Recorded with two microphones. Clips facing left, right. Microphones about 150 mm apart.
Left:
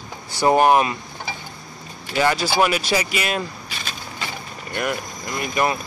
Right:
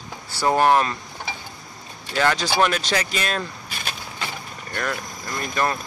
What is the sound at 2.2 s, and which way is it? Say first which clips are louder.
Speech: left 1 dB; 5° left (ahead or behind).